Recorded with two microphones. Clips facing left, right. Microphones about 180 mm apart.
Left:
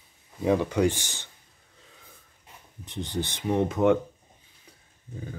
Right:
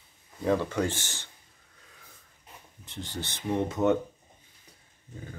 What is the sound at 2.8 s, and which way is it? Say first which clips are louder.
Speech: left 7 dB; 20° left (ahead or behind).